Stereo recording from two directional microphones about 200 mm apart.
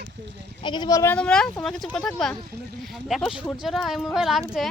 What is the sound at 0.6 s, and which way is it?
Speech, 25° left (ahead or behind).